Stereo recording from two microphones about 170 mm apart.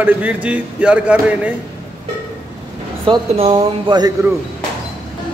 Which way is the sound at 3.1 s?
35° right (ahead or behind).